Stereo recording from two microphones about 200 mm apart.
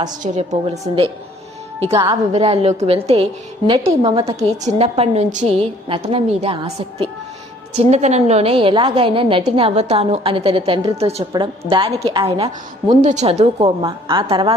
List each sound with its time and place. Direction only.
0.2 s a woman's voice: 35° right (ahead or behind)
1.9 s a woman's voice: 20° right (ahead or behind)
2.3 s a woman's voice: 30° right (ahead or behind)
11.3 s a woman's voice: 15° right (ahead or behind)
11.7 s a woman's voice: 25° right (ahead or behind)